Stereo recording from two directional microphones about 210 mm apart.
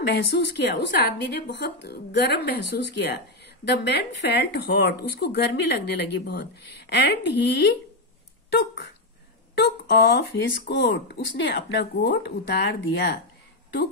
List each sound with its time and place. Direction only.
0.0 s a woman's voice: 55° left (ahead or behind)
11.3 s a woman's voice: 55° left (ahead or behind)